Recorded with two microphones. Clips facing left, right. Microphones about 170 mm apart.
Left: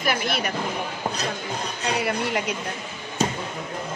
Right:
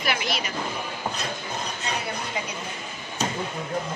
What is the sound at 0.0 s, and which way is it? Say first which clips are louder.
Speech: left 3 dB; 45° left (ahead or behind).